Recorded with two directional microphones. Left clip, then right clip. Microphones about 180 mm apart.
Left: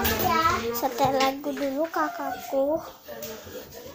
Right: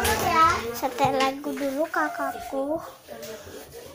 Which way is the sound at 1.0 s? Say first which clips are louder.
Right 1 dB; centre (ahead or behind).